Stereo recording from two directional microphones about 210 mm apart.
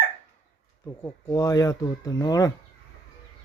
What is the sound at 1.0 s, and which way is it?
Speech, 10° left (ahead or behind).